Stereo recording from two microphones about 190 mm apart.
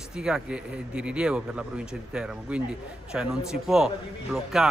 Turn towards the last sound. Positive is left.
turn(degrees=0)  # may be behind; listen again after turning